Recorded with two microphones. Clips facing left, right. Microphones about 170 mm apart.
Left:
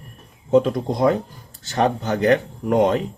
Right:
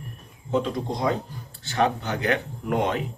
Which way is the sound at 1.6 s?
40° left (ahead or behind).